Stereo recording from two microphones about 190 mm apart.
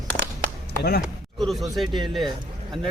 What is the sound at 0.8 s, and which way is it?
Speech, 55° left (ahead or behind).